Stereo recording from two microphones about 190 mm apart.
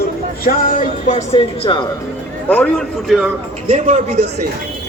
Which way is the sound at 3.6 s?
40° right (ahead or behind).